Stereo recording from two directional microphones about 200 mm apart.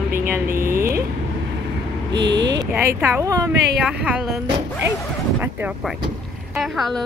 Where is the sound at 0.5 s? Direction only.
45° right (ahead or behind).